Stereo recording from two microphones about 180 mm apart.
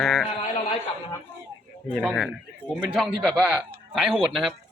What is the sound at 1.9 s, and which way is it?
A man's voice, centre (ahead or behind).